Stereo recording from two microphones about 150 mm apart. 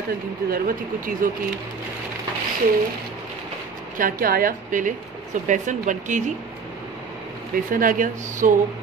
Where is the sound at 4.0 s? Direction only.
70° right (ahead or behind).